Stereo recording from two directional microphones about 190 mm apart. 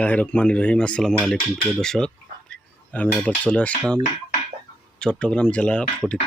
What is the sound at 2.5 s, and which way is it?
Cutlery, 5° left (ahead or behind).